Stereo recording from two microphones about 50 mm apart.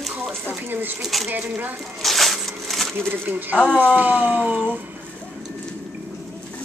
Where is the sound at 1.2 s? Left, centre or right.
Right.